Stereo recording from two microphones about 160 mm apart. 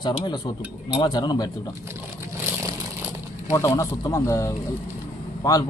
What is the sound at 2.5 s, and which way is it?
Vehicle, 15° right (ahead or behind).